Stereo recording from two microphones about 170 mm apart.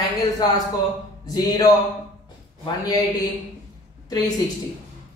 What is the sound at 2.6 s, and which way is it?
Speech, 25° left (ahead or behind).